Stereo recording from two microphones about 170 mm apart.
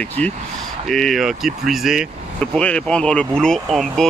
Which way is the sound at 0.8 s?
Centre (ahead or behind).